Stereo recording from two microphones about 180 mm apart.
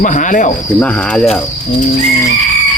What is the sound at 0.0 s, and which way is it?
Speech, 45° left (ahead or behind).